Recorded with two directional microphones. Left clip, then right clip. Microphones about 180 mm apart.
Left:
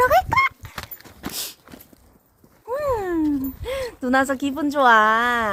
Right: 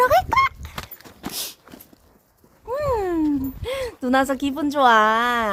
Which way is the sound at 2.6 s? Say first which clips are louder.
Right 1 dB; 5° right (ahead or behind).